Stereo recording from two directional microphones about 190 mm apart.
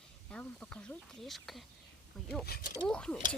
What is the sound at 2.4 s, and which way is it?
Speech, 55° left (ahead or behind).